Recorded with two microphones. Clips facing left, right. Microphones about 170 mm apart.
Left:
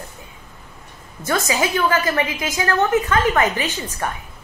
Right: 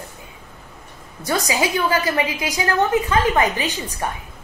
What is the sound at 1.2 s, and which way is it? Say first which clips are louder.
A woman's voice: even; 15° right (ahead or behind).